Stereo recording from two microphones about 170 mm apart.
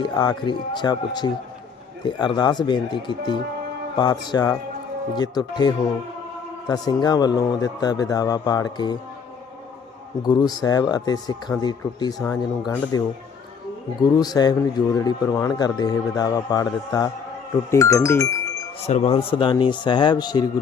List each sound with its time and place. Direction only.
0.0 s a man's voice: 25° left (ahead or behind)
10.2 s a man's voice: 25° left (ahead or behind)
18.8 s a man's voice: 40° left (ahead or behind); by 20.5 s 25° left (ahead or behind)